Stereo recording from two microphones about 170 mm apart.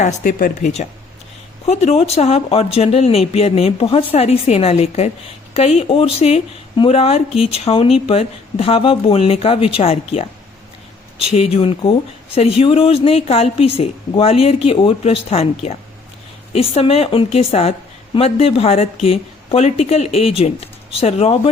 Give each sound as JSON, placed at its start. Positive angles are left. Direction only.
{"t": 0.0, "sound": "speech", "side_deg": 50}
{"t": 11.3, "sound": "speech", "side_deg": 35}